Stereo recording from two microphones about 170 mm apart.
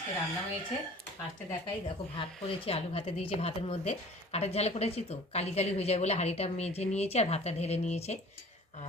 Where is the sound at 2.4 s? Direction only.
35° left (ahead or behind).